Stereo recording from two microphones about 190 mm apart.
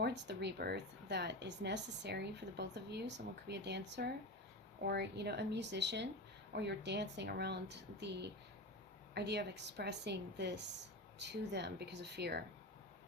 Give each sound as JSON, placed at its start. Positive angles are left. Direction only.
{"t": 0.0, "sound": "speech", "side_deg": -60}